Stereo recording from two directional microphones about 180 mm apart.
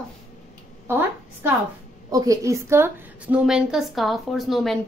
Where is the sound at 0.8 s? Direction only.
10° right (ahead or behind).